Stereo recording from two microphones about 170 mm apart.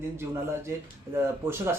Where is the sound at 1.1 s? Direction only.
15° right (ahead or behind).